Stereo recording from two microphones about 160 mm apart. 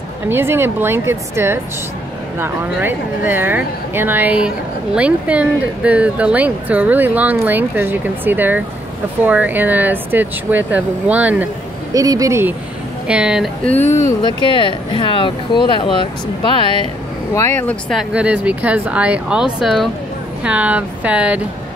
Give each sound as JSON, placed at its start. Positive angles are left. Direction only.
{"t": 0.3, "sound": "speech", "side_deg": -15}
{"t": 11.9, "sound": "speech", "side_deg": -20}
{"t": 13.7, "sound": "speech", "side_deg": 15}
{"t": 14.4, "sound": "speech", "side_deg": 30}
{"t": 17.3, "sound": "speech", "side_deg": 15}
{"t": 18.1, "sound": "speech", "side_deg": -10}